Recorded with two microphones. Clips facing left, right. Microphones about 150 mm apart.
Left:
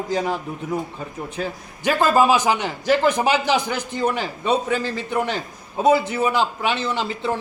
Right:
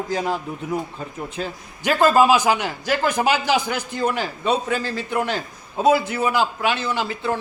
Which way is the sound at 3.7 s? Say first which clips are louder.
Even; 20° left (ahead or behind).